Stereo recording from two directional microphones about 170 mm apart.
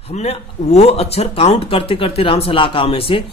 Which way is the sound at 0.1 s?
40° left (ahead or behind).